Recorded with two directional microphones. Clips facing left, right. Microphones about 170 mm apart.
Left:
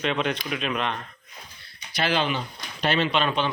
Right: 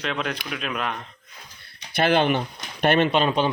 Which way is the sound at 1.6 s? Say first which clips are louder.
Right 5 dB; 55° right (ahead or behind).